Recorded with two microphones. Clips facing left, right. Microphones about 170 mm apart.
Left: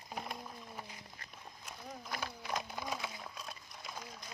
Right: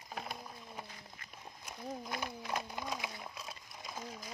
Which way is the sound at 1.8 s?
15° right (ahead or behind).